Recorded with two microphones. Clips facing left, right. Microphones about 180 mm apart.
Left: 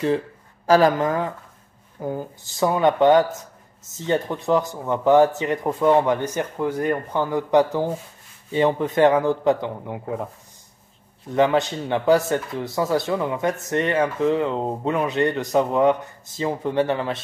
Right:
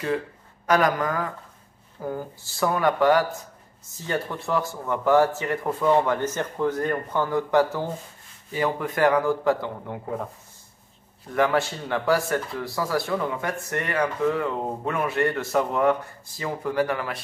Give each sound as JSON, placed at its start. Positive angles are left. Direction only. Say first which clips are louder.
{"t": 0.7, "sound": "speech", "louder": "left 5 dB", "side_deg": 30}
{"t": 11.3, "sound": "speech", "louder": "left 4 dB", "side_deg": 20}